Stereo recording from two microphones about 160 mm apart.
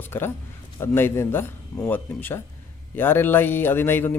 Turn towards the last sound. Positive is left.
turn(degrees=15)  # may be behind; listen again after turning